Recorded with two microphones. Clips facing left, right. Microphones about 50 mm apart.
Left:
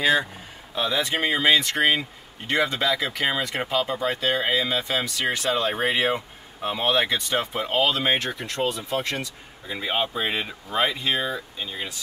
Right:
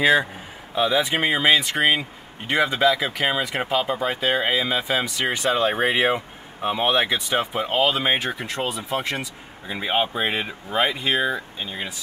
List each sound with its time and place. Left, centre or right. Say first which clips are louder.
0.0 s speech: right 3 dB; centre